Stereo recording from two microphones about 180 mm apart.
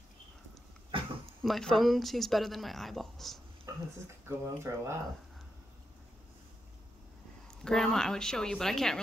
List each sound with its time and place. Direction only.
1.4 s speech: centre (ahead or behind)
3.7 s a sound: 15° right (ahead or behind)
4.3 s speech: 15° right (ahead or behind)
7.6 s speech: 5° left (ahead or behind)